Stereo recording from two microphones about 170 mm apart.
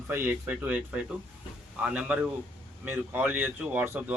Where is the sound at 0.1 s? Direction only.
10° right (ahead or behind).